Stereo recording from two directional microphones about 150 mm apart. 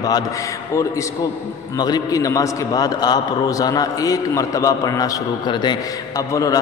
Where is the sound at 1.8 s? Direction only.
25° left (ahead or behind).